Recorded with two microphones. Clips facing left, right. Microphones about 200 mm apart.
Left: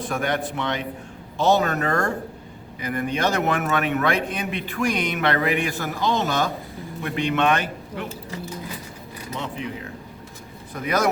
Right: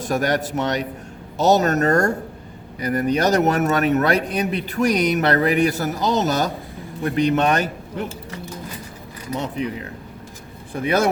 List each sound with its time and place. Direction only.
0.1 s a man's voice: 40° right (ahead or behind)
10.8 s speech: 30° right (ahead or behind)